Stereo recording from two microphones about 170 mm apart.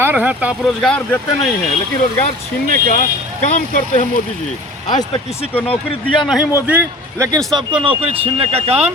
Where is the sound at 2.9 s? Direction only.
45° left (ahead or behind).